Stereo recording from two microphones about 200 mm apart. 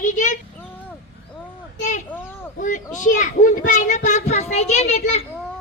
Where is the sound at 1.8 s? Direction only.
35° left (ahead or behind).